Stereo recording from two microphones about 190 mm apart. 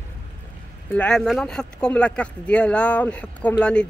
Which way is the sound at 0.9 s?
5° left (ahead or behind).